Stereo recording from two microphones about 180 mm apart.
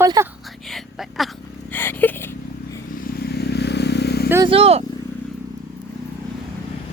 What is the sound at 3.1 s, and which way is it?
Vehicle, 60° left (ahead or behind).